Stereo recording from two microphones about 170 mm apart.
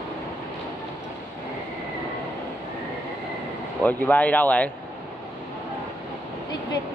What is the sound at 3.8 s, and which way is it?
Speech, 10° left (ahead or behind).